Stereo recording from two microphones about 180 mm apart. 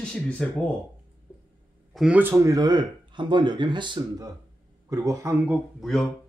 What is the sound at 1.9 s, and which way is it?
A man's voice, 5° right (ahead or behind).